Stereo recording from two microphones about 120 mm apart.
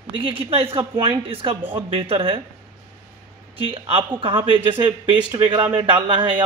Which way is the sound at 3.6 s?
50° right (ahead or behind).